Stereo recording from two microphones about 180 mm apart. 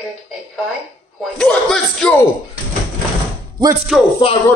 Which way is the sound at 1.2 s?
5° left (ahead or behind).